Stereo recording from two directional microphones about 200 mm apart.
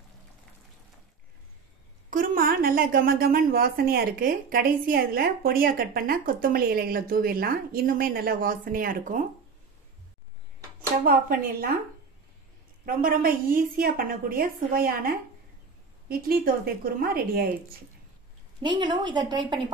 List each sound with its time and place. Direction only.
2.0 s a woman's voice: 45° right (ahead or behind)
11.1 s a woman's voice: 50° right (ahead or behind)
12.8 s a woman's voice: 45° right (ahead or behind)
18.6 s a woman's voice: 20° right (ahead or behind)